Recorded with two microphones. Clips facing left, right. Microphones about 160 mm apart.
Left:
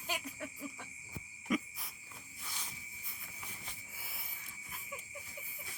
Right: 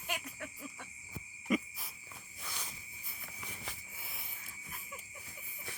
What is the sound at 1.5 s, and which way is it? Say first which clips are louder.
Insect: right 2 dB; 5° right (ahead or behind).